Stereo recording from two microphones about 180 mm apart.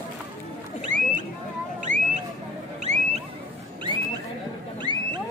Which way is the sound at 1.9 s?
45° right (ahead or behind).